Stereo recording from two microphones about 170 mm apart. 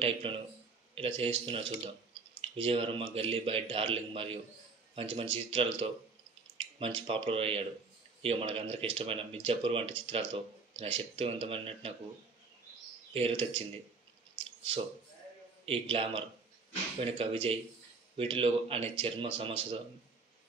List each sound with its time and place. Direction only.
0.0 s speech: 30° right (ahead or behind)
13.1 s speech: 35° right (ahead or behind)
15.6 s speech: 35° right (ahead or behind)